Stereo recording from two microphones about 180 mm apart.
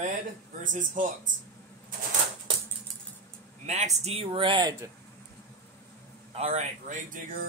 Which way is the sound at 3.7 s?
40° right (ahead or behind).